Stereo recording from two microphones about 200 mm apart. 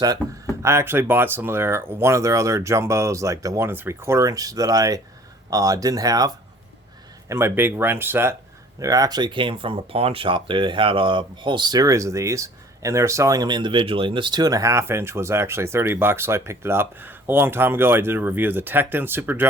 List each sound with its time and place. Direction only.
0.6 s speech: 15° right (ahead or behind)